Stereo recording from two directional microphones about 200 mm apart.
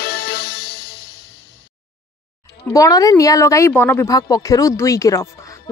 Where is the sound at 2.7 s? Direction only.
15° left (ahead or behind).